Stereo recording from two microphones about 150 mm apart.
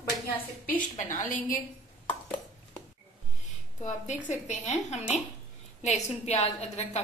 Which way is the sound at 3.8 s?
50° left (ahead or behind).